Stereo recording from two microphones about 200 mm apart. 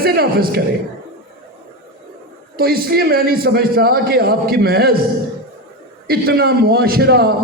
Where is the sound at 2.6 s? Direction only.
50° right (ahead or behind).